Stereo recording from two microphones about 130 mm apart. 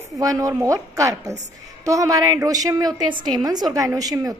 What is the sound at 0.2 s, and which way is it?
A woman's voice, 25° right (ahead or behind).